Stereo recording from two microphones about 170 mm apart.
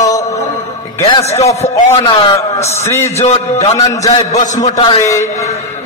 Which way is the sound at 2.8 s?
15° left (ahead or behind).